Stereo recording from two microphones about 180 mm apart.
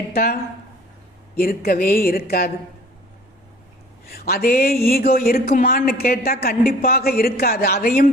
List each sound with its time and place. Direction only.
0.1 s speech: 55° left (ahead or behind)
1.4 s speech: 55° left (ahead or behind)
4.0 s speech: 60° left (ahead or behind)